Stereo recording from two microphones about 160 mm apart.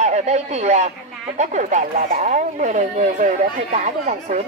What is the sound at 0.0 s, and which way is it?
Speech, 45° right (ahead or behind).